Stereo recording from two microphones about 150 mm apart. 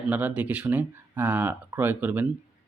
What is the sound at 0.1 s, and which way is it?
Speech, 10° right (ahead or behind).